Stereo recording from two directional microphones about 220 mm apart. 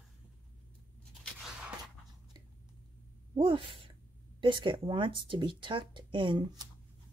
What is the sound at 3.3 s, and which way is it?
Speech, 25° right (ahead or behind).